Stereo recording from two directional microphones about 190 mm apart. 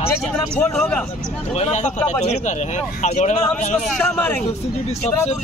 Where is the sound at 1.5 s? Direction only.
35° left (ahead or behind).